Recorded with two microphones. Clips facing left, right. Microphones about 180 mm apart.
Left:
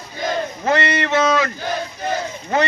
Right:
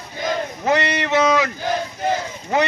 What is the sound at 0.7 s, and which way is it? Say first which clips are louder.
Speech: even; 15° right (ahead or behind).